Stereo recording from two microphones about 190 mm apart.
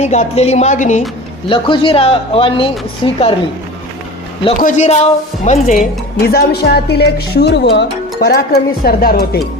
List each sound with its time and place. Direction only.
0.0 s speech: 35° left (ahead or behind)
1.5 s speech: 25° left (ahead or behind)
4.5 s speech: 40° left (ahead or behind)
6.1 s speech: 55° left (ahead or behind)